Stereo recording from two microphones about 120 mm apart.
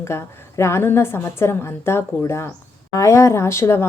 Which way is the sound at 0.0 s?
25° left (ahead or behind).